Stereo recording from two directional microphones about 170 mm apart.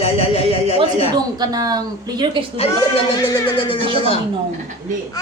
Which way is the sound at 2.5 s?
35° left (ahead or behind).